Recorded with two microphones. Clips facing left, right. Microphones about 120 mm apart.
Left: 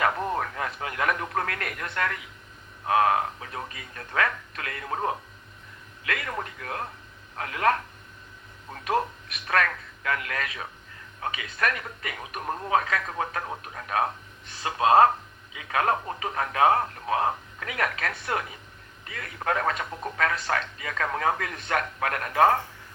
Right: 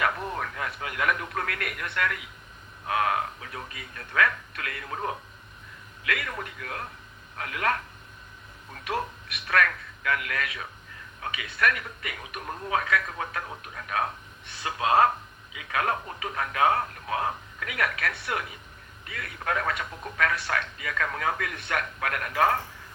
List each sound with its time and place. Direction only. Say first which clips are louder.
0.0 s speech: left 3 dB; 35° left (ahead or behind)